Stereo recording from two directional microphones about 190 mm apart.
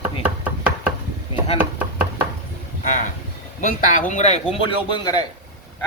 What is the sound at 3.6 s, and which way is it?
Speech, 40° left (ahead or behind).